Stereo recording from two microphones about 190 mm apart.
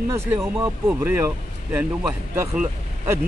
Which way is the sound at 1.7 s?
5° right (ahead or behind).